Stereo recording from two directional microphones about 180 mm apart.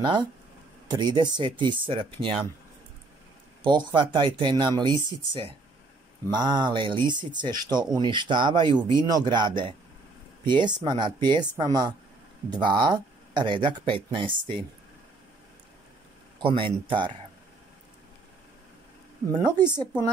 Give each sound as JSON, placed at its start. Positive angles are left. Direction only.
{"t": 0.0, "sound": "speech", "side_deg": -25}
{"t": 3.6, "sound": "speech", "side_deg": -25}
{"t": 16.3, "sound": "speech", "side_deg": -30}
{"t": 19.3, "sound": "speech", "side_deg": -25}